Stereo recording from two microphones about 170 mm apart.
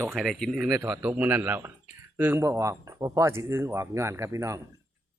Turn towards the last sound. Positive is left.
turn(degrees=-15)  # may be behind; listen again after turning